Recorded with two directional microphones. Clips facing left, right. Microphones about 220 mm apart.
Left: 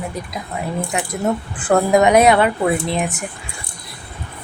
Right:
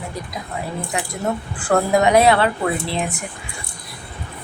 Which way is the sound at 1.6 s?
20° left (ahead or behind).